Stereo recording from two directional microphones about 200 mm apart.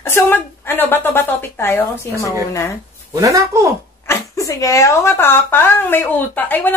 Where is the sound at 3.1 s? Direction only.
15° right (ahead or behind).